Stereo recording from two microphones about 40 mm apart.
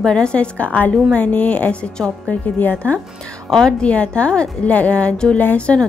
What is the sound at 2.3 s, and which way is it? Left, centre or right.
Speech, left.